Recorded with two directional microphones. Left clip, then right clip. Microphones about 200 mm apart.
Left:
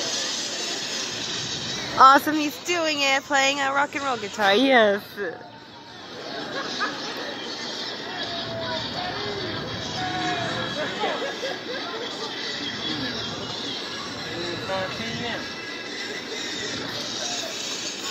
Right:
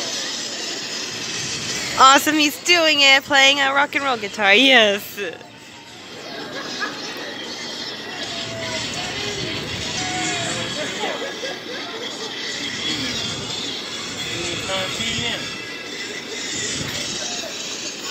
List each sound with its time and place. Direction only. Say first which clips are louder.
0.0 s vehicle: right 1 dB; centre (ahead or behind)
1.7 s speech: right 2 dB; 5° right (ahead or behind)
4.6 s speech: right 5 dB; 20° right (ahead or behind)
14.7 s music: right 5 dB; 10° right (ahead or behind)